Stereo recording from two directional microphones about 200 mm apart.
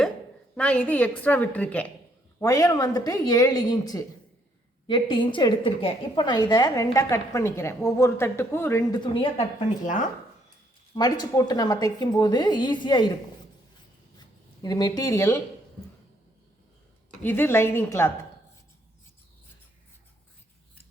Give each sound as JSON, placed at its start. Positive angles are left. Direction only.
{"t": 0.5, "sound": "a woman's voice", "side_deg": 5}
{"t": 9.8, "sound": "speech", "side_deg": 40}
{"t": 10.9, "sound": "a woman's voice", "side_deg": 20}
{"t": 14.2, "sound": "speech", "side_deg": 20}
{"t": 17.2, "sound": "speech", "side_deg": 10}